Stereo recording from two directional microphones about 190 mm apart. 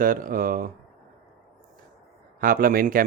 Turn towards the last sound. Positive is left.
turn(degrees=-50)  # may be behind; listen again after turning